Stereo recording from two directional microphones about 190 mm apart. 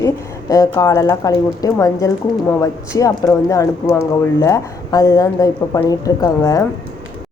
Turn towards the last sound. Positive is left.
turn(degrees=20)  # may be behind; listen again after turning